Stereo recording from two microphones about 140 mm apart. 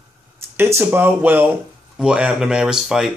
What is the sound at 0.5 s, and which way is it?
Speech, 15° right (ahead or behind).